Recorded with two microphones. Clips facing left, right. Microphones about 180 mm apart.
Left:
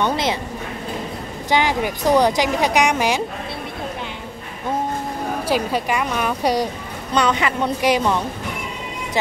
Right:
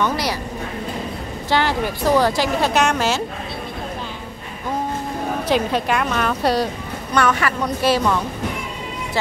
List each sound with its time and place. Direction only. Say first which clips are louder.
0.0 s speech: left 1 dB; 20° left (ahead or behind)
1.5 s speech: left 1 dB; 15° left (ahead or behind)
5.5 s speech: right 2 dB; 10° left (ahead or behind)